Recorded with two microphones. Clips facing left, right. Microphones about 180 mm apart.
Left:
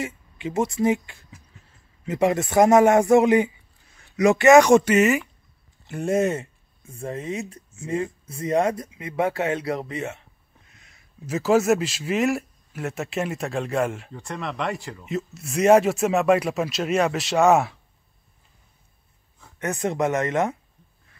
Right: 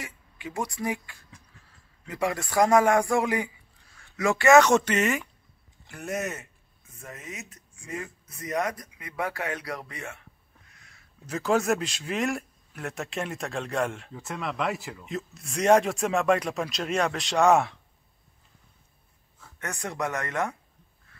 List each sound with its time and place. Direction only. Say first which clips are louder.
0.0 s a man's voice: left 9 dB; 25° left (ahead or behind); by 5.2 s 10° left (ahead or behind)
5.9 s speech: left 10 dB; 25° left (ahead or behind)
10.7 s a sound: left 2 dB; 20° left (ahead or behind)
11.2 s speech: left 5 dB; 5° left (ahead or behind)
19.4 s speech: left 9 dB; 20° left (ahead or behind)